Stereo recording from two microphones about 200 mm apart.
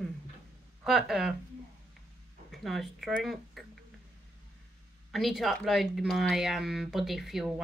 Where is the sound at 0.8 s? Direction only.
Centre (ahead or behind).